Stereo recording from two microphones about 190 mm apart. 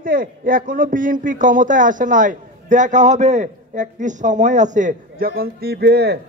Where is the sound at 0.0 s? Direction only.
45° right (ahead or behind).